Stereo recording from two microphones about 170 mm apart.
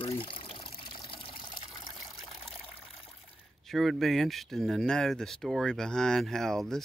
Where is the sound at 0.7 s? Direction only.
30° left (ahead or behind).